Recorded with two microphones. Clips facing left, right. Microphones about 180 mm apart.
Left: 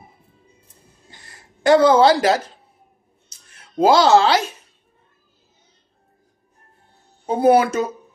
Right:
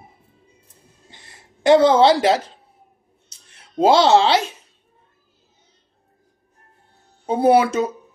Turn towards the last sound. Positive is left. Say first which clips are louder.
# even
turn(degrees=-30)  # may be behind; listen again after turning